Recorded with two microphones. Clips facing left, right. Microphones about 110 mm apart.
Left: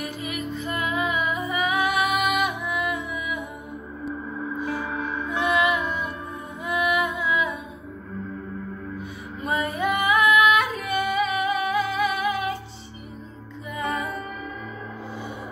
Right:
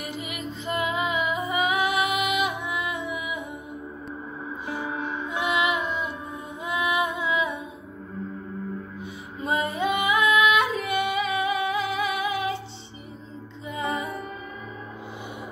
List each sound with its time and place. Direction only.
0.0 s music: 20° right (ahead or behind)
4.6 s music: 25° right (ahead or behind)
9.4 s female singing: 25° right (ahead or behind)
13.7 s music: 25° right (ahead or behind)